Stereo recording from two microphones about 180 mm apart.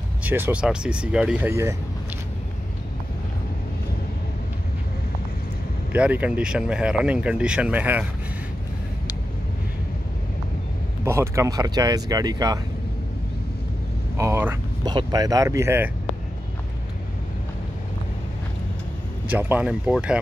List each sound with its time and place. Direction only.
0.2 s speech: 10° right (ahead or behind)
5.9 s speech: 10° right (ahead or behind)
11.1 s speech: 15° right (ahead or behind)
14.1 s speech: 15° right (ahead or behind)
19.2 s speech: 10° right (ahead or behind)